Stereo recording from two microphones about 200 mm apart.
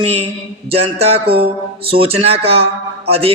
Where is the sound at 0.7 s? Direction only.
30° right (ahead or behind).